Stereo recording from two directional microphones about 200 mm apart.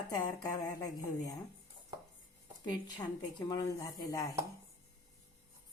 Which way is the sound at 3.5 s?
15° left (ahead or behind).